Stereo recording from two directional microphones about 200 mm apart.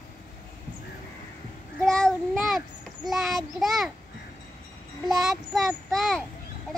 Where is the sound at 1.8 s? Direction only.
Centre (ahead or behind).